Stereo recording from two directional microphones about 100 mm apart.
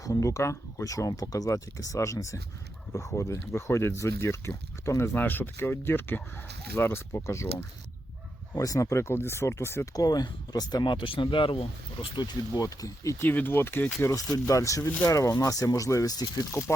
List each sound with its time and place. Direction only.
0.0 s speech: 30° left (ahead or behind)
8.5 s speech: 35° left (ahead or behind)
9.9 s speech: 40° left (ahead or behind)
10.9 s speech: 55° left (ahead or behind)
12.1 s speech: 50° left (ahead or behind)
12.6 s speech: 35° left (ahead or behind)
13.1 s speech: 20° left (ahead or behind); by 16.5 s 40° left (ahead or behind)